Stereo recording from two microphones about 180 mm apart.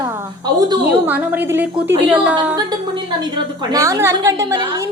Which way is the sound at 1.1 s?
10° right (ahead or behind).